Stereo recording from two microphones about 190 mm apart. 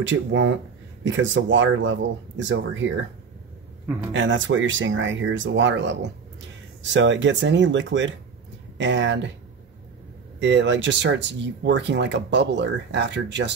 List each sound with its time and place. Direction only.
0.0 s speech: 75° right (ahead or behind)
4.1 s speech: 75° right (ahead or behind)
10.4 s speech: 70° right (ahead or behind)